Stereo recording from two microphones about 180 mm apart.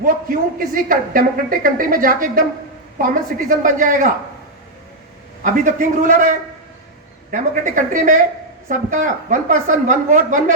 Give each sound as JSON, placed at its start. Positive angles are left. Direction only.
{"t": 0.0, "sound": "a woman's voice", "side_deg": -50}
{"t": 5.4, "sound": "a woman's voice", "side_deg": -45}
{"t": 7.3, "sound": "a woman's voice", "side_deg": -45}